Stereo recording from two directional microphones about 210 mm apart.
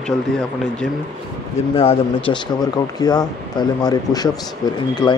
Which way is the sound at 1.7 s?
25° left (ahead or behind).